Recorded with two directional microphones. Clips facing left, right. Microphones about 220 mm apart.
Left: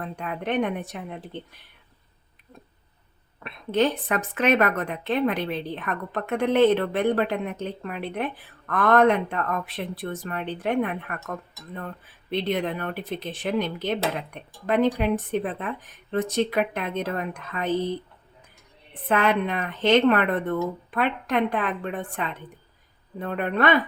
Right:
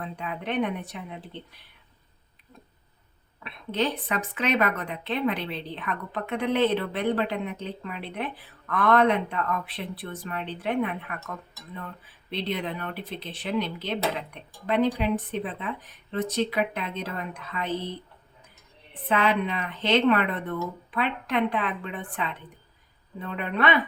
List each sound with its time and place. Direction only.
0.2 s a woman's voice: 50° left (ahead or behind)
3.4 s a woman's voice: 50° left (ahead or behind)
19.0 s a woman's voice: 50° left (ahead or behind)